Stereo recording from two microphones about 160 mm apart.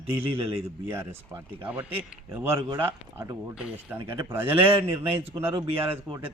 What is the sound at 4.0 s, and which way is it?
Speech, 30° right (ahead or behind).